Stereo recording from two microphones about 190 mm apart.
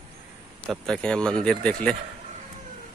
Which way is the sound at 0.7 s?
5° left (ahead or behind).